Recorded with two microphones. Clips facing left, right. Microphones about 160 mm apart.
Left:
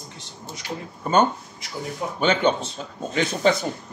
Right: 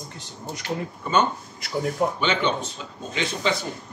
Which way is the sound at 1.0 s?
45° left (ahead or behind).